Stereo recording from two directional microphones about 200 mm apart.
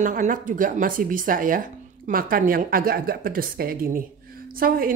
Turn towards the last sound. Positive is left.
turn(degrees=-45)  # may be behind; listen again after turning